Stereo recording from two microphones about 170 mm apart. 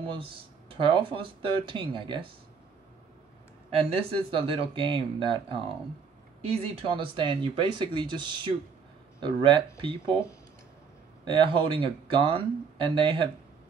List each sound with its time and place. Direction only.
0.1 s speech: 30° right (ahead or behind)
3.9 s speech: 30° right (ahead or behind)
11.2 s speech: 30° right (ahead or behind)